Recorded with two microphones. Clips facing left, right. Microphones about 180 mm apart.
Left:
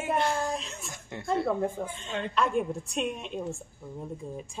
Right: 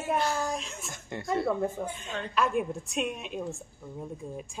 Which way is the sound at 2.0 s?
25° left (ahead or behind).